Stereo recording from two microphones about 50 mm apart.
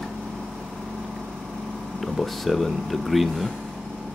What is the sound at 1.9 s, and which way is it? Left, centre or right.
Speech, centre.